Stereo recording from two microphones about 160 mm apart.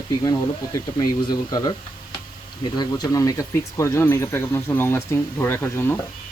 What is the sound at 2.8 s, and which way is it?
Speech, 25° left (ahead or behind).